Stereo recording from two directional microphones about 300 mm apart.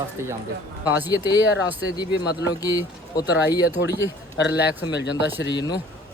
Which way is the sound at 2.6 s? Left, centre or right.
Centre.